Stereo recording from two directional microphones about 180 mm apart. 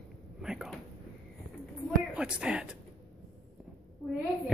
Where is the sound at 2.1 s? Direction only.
5° right (ahead or behind).